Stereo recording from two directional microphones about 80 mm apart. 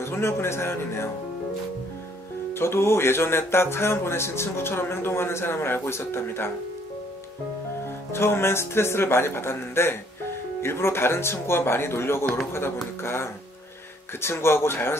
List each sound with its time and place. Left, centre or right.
0.0 s music: left
2.5 s music: left
8.1 s music: left